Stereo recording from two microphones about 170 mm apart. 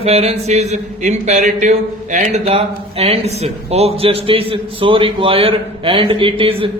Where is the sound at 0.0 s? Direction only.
40° right (ahead or behind).